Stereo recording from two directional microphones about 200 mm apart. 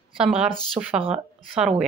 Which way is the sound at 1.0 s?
25° right (ahead or behind).